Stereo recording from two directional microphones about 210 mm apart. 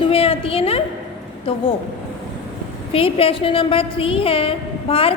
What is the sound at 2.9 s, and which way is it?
A woman's voice, 25° left (ahead or behind).